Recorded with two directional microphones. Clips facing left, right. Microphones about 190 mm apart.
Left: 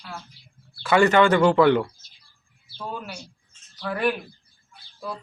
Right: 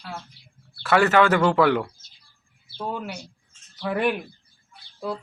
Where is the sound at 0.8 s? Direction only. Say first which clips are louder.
Left 1 dB; centre (ahead or behind).